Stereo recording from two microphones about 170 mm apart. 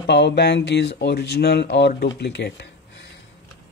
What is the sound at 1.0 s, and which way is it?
Speech, 75° left (ahead or behind).